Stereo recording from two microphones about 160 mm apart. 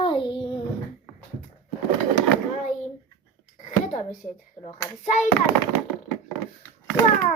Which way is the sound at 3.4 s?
45° left (ahead or behind).